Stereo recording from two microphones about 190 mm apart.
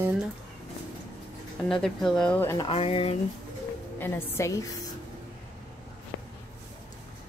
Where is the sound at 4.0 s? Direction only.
15° left (ahead or behind).